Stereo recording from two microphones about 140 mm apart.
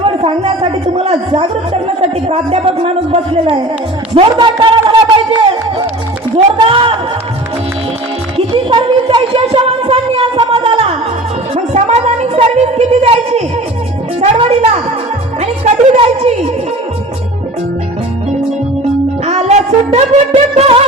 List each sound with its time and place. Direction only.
0.0 s a woman's voice: 40° right (ahead or behind)
2.3 s speech: 45° right (ahead or behind)
4.4 s music: 35° right (ahead or behind)
6.3 s speech: 40° right (ahead or behind)
8.4 s a sound: 40° right (ahead or behind)
11.7 s music: 55° right (ahead or behind)
14.3 s a sound: 40° right (ahead or behind)
15.4 s music: 50° right (ahead or behind)
19.2 s music: 50° right (ahead or behind)